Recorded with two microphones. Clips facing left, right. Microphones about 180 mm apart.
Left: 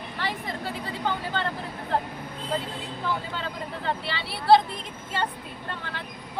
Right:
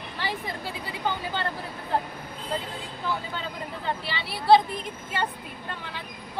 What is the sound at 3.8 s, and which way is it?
Speech, centre (ahead or behind).